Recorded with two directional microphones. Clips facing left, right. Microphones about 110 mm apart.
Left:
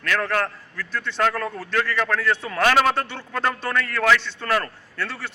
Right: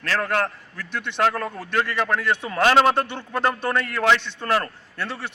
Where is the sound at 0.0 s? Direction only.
30° right (ahead or behind).